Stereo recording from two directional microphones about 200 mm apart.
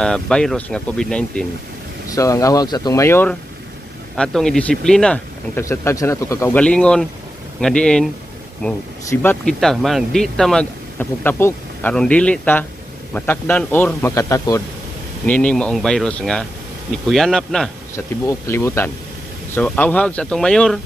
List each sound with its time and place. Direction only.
0.0 s speech: 5° left (ahead or behind)
2.0 s speech: 15° left (ahead or behind)
17.9 s speech: 15° left (ahead or behind)